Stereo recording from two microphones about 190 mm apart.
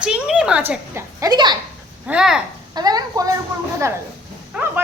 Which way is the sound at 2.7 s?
20° right (ahead or behind).